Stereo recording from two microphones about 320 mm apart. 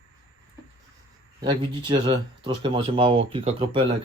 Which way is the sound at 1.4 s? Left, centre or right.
Centre.